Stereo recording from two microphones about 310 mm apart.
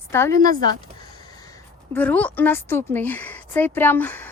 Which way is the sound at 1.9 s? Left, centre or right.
Centre.